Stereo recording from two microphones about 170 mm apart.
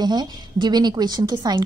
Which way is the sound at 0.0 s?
25° right (ahead or behind).